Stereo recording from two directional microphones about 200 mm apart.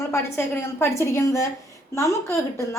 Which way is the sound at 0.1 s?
10° left (ahead or behind).